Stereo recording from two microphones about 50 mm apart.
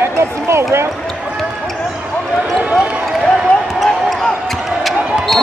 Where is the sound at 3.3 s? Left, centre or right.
Centre.